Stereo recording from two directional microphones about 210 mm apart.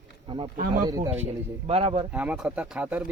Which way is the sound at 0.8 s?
15° right (ahead or behind).